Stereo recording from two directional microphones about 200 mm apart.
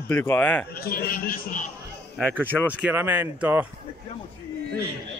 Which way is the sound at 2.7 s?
10° right (ahead or behind).